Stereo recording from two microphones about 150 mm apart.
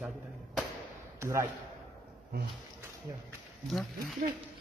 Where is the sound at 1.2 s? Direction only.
20° right (ahead or behind).